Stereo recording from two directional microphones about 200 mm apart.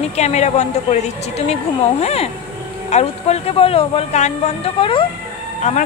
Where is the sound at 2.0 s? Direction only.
30° left (ahead or behind).